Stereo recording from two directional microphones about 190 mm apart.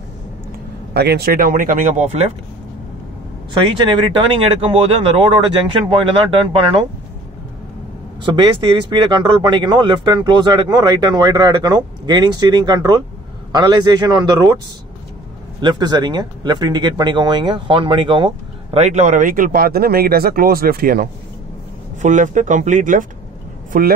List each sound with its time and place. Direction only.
0.9 s speech: 55° right (ahead or behind); by 2.2 s 40° right (ahead or behind)
4.2 s speech: 30° right (ahead or behind)
8.3 s speech: 25° right (ahead or behind)
15.6 s speech: 20° right (ahead or behind); by 23.9 s 45° right (ahead or behind)